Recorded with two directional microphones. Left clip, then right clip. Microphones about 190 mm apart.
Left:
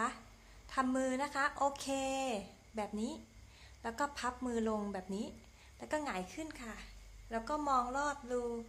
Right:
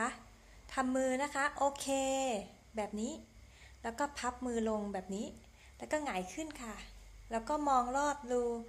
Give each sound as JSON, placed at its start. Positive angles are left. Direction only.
{"t": 0.7, "sound": "a woman's voice", "side_deg": -10}